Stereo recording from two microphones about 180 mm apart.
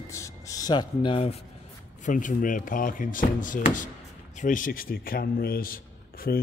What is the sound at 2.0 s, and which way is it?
Speech, 45° left (ahead or behind).